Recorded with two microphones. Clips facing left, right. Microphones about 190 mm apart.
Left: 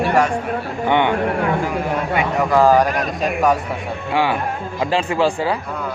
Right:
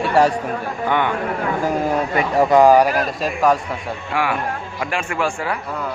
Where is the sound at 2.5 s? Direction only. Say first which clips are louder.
Right 2 dB; 15° right (ahead or behind).